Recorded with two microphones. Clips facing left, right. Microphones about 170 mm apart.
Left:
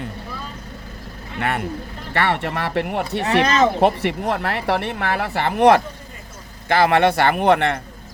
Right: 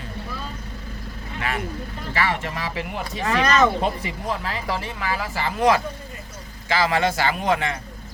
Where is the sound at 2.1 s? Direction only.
65° left (ahead or behind).